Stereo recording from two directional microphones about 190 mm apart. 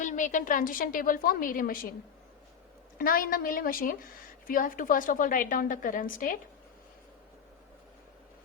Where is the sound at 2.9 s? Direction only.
50° left (ahead or behind).